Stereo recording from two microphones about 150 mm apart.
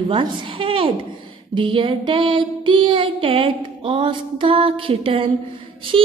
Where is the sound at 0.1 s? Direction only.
35° right (ahead or behind).